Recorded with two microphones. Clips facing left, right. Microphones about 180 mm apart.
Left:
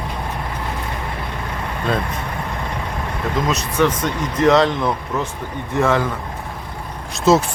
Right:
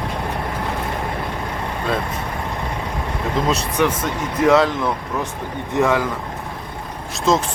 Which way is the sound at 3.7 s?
10° right (ahead or behind).